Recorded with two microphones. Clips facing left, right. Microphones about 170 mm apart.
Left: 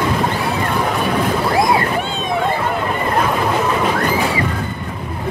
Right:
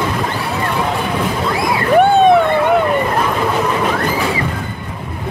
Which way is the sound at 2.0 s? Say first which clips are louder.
Right 11 dB; 60° right (ahead or behind).